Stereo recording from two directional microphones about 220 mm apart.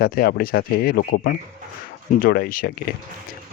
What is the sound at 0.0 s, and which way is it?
Speech, 45° left (ahead or behind).